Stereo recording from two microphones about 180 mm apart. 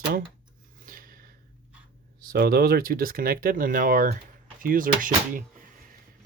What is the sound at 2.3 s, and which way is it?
Speech, 60° right (ahead or behind).